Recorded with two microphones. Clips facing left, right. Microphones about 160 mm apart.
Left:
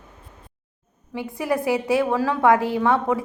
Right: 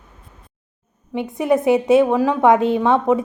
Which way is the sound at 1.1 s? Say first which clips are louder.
Right 6 dB; 20° right (ahead or behind).